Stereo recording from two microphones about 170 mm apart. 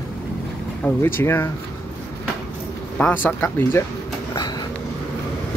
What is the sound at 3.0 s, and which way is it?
Speech, 10° left (ahead or behind).